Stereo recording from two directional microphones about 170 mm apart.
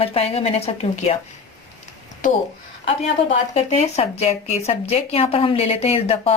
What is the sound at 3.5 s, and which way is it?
Speech, 40° left (ahead or behind).